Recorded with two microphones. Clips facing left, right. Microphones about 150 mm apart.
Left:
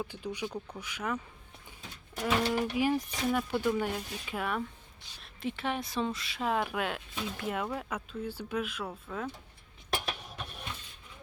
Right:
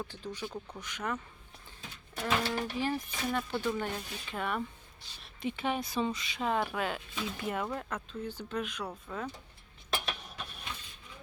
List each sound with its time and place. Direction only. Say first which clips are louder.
0.0 s speech: left 3 dB; 10° left (ahead or behind)